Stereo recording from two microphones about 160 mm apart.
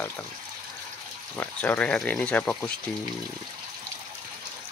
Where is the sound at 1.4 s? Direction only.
10° left (ahead or behind).